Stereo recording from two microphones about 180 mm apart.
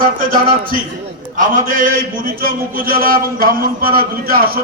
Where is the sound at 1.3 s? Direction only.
50° right (ahead or behind).